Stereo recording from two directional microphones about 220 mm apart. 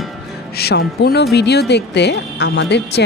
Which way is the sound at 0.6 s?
45° left (ahead or behind).